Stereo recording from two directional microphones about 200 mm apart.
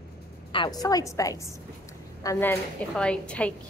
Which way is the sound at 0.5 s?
20° left (ahead or behind).